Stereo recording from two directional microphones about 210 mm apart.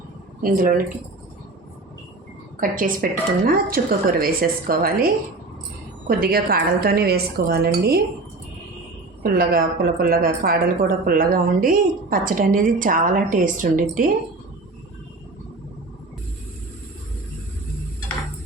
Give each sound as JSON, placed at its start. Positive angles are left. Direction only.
{"t": 0.4, "sound": "a woman's voice", "side_deg": -40}
{"t": 2.6, "sound": "a woman's voice", "side_deg": -40}
{"t": 9.2, "sound": "a woman's voice", "side_deg": -45}